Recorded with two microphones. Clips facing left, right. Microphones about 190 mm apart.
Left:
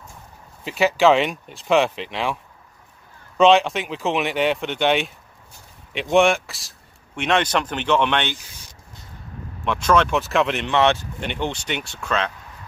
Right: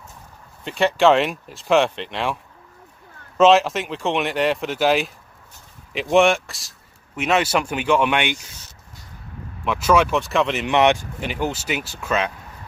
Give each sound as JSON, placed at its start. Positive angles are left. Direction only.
{"t": 0.7, "sound": "speech", "side_deg": 5}
{"t": 3.3, "sound": "speech", "side_deg": 0}
{"t": 9.7, "sound": "speech", "side_deg": -5}
{"t": 10.7, "sound": "speech", "side_deg": -15}
{"t": 11.1, "sound": "speech", "side_deg": -5}